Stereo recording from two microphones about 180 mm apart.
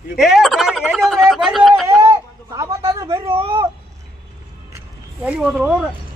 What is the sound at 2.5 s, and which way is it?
Speech, 20° right (ahead or behind).